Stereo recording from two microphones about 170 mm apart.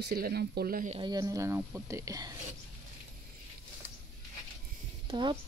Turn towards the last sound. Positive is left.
turn(degrees=-25)  # may be behind; listen again after turning